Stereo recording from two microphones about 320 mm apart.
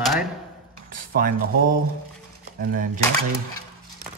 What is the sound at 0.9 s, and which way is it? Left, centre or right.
Speech, right.